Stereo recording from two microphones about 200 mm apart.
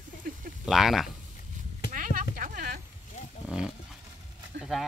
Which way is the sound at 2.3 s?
45° right (ahead or behind).